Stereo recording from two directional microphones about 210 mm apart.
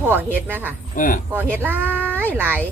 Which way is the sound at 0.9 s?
40° left (ahead or behind).